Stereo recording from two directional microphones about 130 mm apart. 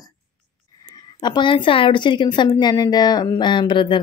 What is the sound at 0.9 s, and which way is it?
Speech, 35° left (ahead or behind).